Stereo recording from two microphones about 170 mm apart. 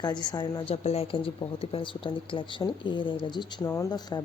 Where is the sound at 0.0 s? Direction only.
25° left (ahead or behind).